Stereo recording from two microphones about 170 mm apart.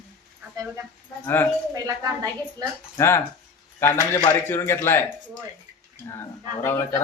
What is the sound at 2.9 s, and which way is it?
Speech, 15° left (ahead or behind).